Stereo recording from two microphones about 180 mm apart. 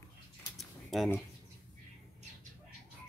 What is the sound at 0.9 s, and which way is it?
Speech, centre (ahead or behind).